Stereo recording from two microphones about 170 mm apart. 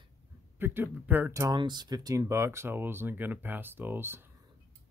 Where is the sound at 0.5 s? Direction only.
10° right (ahead or behind).